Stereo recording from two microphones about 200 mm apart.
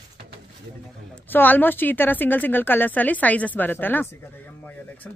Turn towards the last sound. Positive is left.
turn(degrees=10)  # may be behind; listen again after turning